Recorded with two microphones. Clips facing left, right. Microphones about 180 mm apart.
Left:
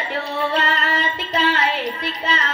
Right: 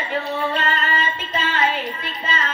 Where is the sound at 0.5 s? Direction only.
75° left (ahead or behind).